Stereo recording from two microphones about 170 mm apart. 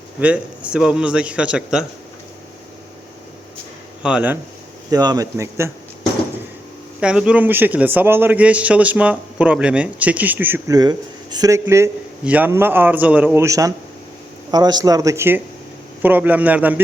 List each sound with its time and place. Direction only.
0.2 s a man's voice: 10° right (ahead or behind)
4.0 s a man's voice: 10° right (ahead or behind)
4.9 s speech: 25° right (ahead or behind)
7.0 s a man's voice: 5° right (ahead or behind)
10.8 s a man's voice: 25° right (ahead or behind)